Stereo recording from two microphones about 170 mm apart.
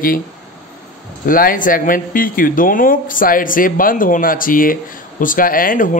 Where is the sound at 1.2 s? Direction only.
55° left (ahead or behind).